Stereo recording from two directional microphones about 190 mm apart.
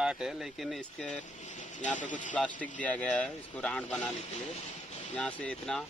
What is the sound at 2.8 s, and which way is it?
A man's voice, 5° left (ahead or behind).